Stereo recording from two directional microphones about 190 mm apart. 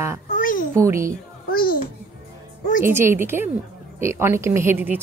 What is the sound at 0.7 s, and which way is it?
Speech, 15° right (ahead or behind).